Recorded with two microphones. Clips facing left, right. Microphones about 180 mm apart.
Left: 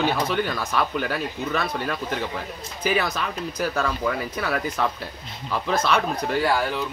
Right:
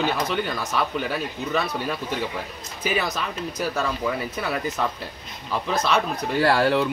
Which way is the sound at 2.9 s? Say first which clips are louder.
Left 1 dB; centre (ahead or behind).